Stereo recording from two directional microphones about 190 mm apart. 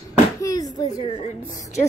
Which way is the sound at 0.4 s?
20° left (ahead or behind).